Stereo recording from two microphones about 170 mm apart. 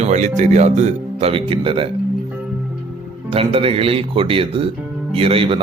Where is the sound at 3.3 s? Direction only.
35° right (ahead or behind).